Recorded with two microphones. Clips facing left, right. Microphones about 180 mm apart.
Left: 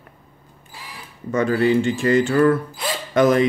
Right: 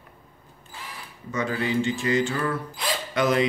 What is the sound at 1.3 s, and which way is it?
Speech, 55° left (ahead or behind).